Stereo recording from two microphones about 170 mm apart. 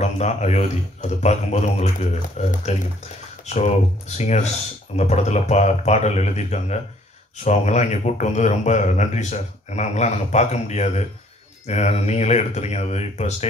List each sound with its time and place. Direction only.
0.0 s a man's voice: 40° left (ahead or behind)